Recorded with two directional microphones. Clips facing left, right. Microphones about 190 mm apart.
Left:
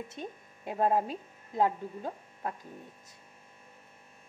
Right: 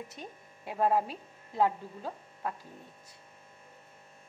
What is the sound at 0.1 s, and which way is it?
Speech, 25° left (ahead or behind).